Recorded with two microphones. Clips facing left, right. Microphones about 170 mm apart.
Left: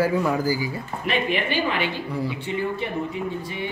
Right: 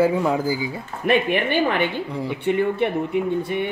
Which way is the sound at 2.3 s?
60° right (ahead or behind).